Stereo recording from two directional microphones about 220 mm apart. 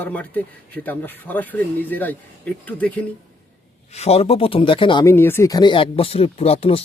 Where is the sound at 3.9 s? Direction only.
30° left (ahead or behind).